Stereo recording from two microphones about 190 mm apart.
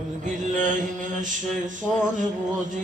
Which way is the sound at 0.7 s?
45° right (ahead or behind).